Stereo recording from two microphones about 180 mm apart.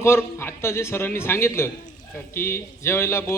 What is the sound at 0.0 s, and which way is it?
A man's voice, 15° left (ahead or behind).